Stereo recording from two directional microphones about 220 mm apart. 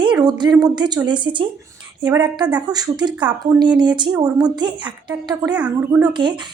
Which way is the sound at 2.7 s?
20° right (ahead or behind).